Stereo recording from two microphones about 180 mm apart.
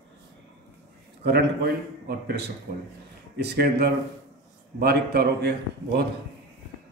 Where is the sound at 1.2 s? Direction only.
60° right (ahead or behind).